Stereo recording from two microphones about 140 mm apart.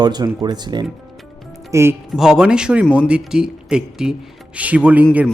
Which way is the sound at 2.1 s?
5° right (ahead or behind).